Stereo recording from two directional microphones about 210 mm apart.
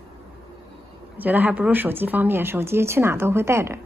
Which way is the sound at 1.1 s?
10° right (ahead or behind).